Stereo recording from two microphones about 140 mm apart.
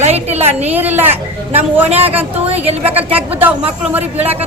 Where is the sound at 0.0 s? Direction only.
50° right (ahead or behind).